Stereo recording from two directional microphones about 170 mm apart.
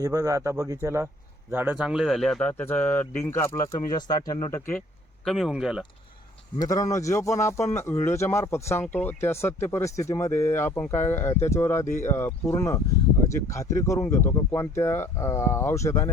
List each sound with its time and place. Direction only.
0.0 s speech: 20° right (ahead or behind); by 4.6 s 20° left (ahead or behind)
5.2 s speech: centre (ahead or behind)
6.6 s speech: 20° left (ahead or behind)